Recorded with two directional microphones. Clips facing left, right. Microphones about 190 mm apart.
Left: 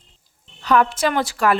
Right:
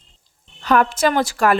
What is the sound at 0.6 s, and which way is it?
Speech, 50° right (ahead or behind).